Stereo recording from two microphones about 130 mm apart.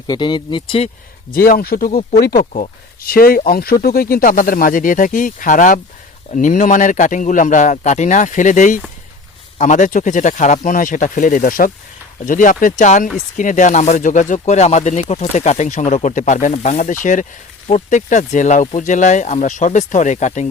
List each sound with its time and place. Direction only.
0.1 s speech: 35° left (ahead or behind)
1.9 s speech: 65° left (ahead or behind)
3.7 s speech: 30° left (ahead or behind)
4.2 s speech: 90° left
6.3 s speech: 80° left
17.7 s speech: 70° left (ahead or behind)